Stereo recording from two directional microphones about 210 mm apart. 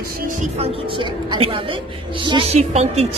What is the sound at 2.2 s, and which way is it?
Speech, 25° right (ahead or behind).